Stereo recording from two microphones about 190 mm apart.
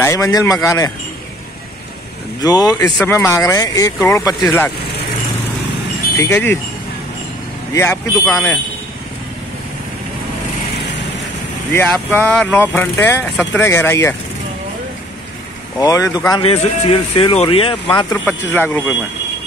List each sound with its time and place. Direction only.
0.0 s speech: 15° left (ahead or behind)
2.4 s speech: 20° left (ahead or behind)
6.1 s speech: 10° left (ahead or behind)
7.7 s speech: 15° left (ahead or behind)
11.7 s speech: 10° left (ahead or behind)
15.8 s speech: 20° left (ahead or behind)
18.1 s speech: 10° left (ahead or behind)